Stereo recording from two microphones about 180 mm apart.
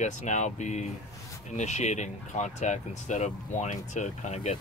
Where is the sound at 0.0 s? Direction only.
40° left (ahead or behind).